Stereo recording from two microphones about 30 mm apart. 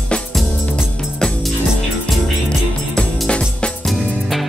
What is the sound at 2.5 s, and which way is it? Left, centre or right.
Music, left.